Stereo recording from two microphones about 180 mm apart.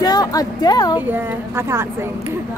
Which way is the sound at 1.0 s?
10° right (ahead or behind).